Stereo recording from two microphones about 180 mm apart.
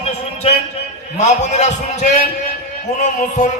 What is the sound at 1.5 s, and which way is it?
A man's voice, 40° left (ahead or behind).